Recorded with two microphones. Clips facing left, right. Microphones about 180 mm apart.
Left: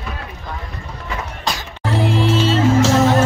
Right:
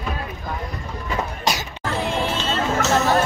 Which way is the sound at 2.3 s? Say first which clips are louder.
Left 8 dB; 90° left.